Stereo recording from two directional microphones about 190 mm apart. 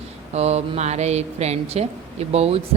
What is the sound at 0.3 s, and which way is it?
Speech, 35° right (ahead or behind).